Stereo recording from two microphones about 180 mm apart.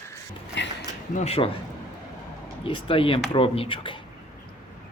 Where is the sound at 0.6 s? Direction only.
80° left.